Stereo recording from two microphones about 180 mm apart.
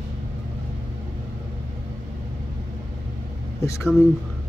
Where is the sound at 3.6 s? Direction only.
15° left (ahead or behind).